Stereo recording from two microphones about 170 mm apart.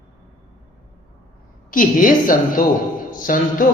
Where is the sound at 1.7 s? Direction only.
50° left (ahead or behind).